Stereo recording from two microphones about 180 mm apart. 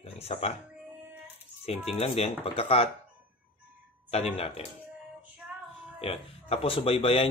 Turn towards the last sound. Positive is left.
turn(degrees=30)  # may be behind; listen again after turning